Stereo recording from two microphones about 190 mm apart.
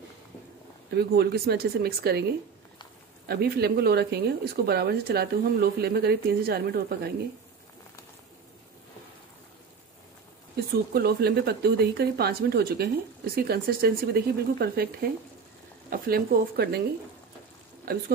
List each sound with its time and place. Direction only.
0.9 s speech: 55° right (ahead or behind)
3.3 s speech: 55° right (ahead or behind)
10.7 s speech: 55° right (ahead or behind)
17.9 s speech: 50° right (ahead or behind)